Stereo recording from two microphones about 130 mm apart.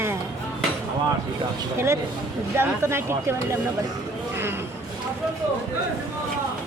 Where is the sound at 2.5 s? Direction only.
20° right (ahead or behind).